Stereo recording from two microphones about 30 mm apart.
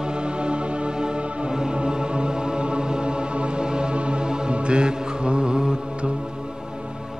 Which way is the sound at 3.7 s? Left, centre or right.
Right.